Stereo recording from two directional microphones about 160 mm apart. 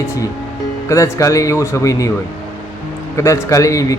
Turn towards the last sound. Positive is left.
turn(degrees=20)  # may be behind; listen again after turning